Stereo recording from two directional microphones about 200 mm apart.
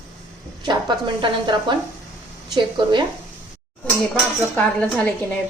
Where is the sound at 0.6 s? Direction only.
20° right (ahead or behind).